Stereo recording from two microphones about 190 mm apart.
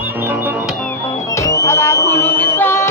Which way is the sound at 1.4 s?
15° left (ahead or behind).